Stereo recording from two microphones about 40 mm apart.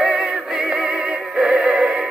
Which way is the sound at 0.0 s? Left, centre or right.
Centre.